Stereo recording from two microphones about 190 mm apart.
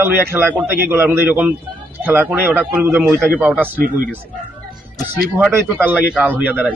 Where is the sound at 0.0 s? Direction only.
10° right (ahead or behind).